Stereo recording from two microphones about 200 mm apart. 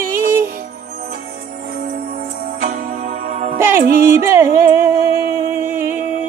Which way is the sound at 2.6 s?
45° right (ahead or behind).